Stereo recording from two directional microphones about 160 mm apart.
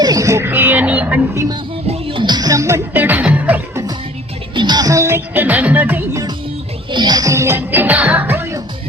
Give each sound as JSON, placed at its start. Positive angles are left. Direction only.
{"t": 0.0, "sound": "a sound", "side_deg": -20}
{"t": 1.9, "sound": "music", "side_deg": -35}
{"t": 4.5, "sound": "music", "side_deg": -25}
{"t": 6.9, "sound": "music", "side_deg": -25}